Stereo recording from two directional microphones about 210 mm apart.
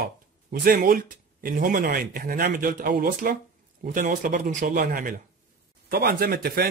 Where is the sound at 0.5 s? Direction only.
45° right (ahead or behind).